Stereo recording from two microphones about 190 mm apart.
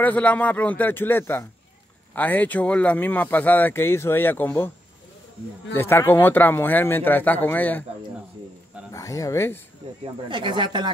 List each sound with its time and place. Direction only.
0.0 s speech: 10° left (ahead or behind)
5.8 s speech: 10° left (ahead or behind)
8.9 s speech: 15° left (ahead or behind)
10.2 s speech: 25° right (ahead or behind)